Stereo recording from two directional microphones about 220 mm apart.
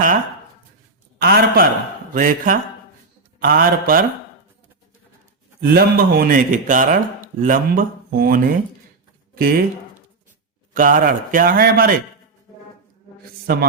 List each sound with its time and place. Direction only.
1.2 s a man's voice: 45° right (ahead or behind)
5.6 s speech: 45° right (ahead or behind)
10.8 s speech: 40° right (ahead or behind)
13.5 s a man's voice: 45° right (ahead or behind)